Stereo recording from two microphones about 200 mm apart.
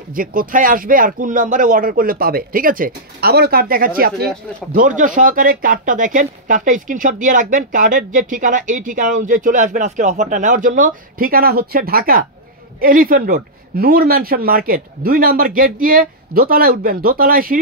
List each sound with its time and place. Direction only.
0.1 s speech: 45° right (ahead or behind)